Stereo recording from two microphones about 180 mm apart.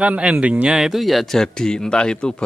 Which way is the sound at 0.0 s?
5° right (ahead or behind).